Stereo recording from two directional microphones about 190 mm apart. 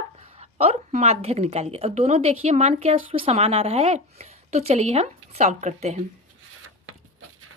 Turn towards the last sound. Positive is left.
turn(degrees=-35)  # may be behind; listen again after turning